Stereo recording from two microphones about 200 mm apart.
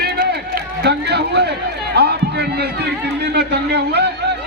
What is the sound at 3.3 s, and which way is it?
Speech, 55° right (ahead or behind).